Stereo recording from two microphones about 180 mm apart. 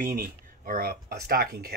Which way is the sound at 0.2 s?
55° right (ahead or behind).